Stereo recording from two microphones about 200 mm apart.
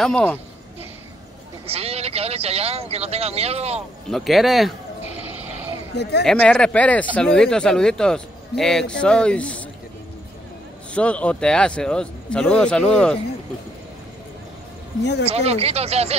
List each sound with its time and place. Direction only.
0.0 s speech: 5° left (ahead or behind)
1.7 s speech: 30° right (ahead or behind)
4.1 s speech: centre (ahead or behind)
6.2 s speech: 5° left (ahead or behind)
10.9 s speech: 5° left (ahead or behind)
15.2 s speech: 30° right (ahead or behind)